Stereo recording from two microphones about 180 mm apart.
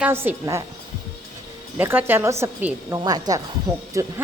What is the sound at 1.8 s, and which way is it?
A woman's voice, 10° right (ahead or behind).